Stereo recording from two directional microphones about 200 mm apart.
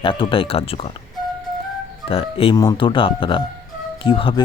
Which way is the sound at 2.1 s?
30° left (ahead or behind).